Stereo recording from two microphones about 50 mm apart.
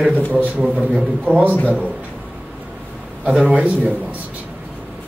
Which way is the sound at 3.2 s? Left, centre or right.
Right.